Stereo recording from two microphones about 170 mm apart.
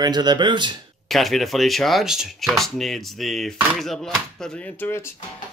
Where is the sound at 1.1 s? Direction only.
Centre (ahead or behind).